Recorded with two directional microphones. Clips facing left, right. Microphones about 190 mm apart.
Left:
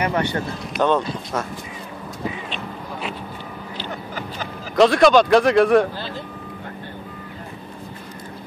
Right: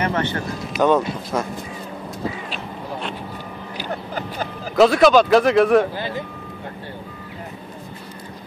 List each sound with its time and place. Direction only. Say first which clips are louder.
0.0 s speech: even; 15° left (ahead or behind)
0.7 s speech: right 2 dB; 10° right (ahead or behind)
2.5 s a sound: right 1 dB; 5° left (ahead or behind)
3.9 s a sound: right 6 dB; 35° right (ahead or behind)
4.7 s speech: even; centre (ahead or behind)
5.9 s vehicle: right 4 dB; 15° right (ahead or behind)